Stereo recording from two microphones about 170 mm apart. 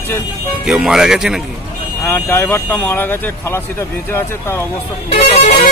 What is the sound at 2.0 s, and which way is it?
Speech, 10° left (ahead or behind).